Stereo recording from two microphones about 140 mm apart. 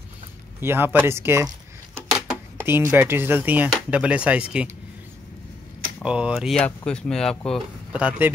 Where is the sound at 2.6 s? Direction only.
15° right (ahead or behind).